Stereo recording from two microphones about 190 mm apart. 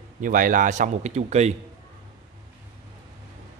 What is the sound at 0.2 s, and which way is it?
Speech, 45° right (ahead or behind).